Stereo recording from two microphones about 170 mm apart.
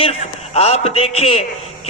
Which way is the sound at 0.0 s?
35° left (ahead or behind).